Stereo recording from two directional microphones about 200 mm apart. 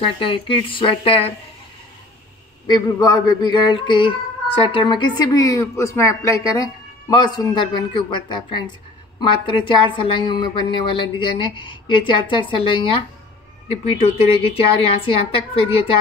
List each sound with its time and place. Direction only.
0.0 s a woman's voice: 25° left (ahead or behind)
2.6 s a woman's voice: 20° left (ahead or behind)